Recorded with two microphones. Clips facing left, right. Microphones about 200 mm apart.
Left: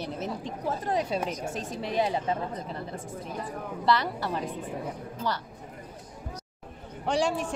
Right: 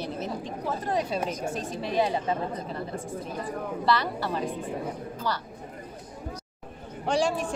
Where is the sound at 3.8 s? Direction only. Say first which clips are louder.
Left 1 dB; 20° left (ahead or behind).